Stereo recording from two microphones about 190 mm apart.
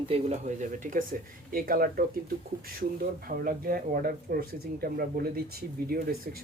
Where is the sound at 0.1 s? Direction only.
35° right (ahead or behind).